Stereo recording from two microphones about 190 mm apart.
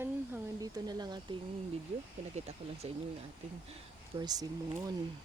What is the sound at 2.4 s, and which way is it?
Speech, 35° right (ahead or behind).